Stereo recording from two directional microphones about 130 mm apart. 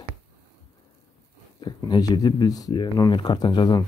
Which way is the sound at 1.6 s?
30° left (ahead or behind).